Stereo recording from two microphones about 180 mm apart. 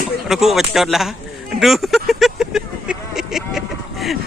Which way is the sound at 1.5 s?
Centre (ahead or behind).